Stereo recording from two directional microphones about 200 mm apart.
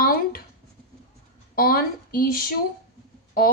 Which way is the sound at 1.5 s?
45° left (ahead or behind).